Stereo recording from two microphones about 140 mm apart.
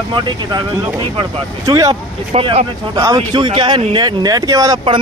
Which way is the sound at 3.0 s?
30° right (ahead or behind).